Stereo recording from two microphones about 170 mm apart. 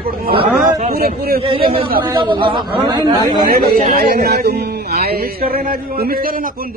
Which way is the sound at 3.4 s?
60° right (ahead or behind).